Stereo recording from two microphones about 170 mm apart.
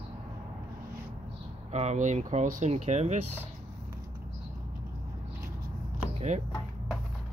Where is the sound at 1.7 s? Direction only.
40° right (ahead or behind).